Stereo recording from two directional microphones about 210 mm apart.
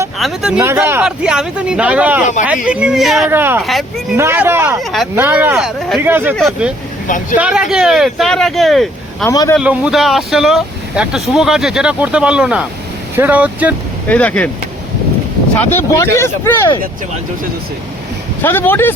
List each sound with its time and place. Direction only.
0.2 s speech: centre (ahead or behind)
3.6 s speech: centre (ahead or behind)
4.2 s speech: 10° right (ahead or behind)
4.8 s speech: centre (ahead or behind)
9.3 s speech: 20° left (ahead or behind)
9.6 s speech: 5° right (ahead or behind)
14.1 s speech: 5° left (ahead or behind)
15.9 s speech: 15° left (ahead or behind)
18.4 s speech: 10° left (ahead or behind)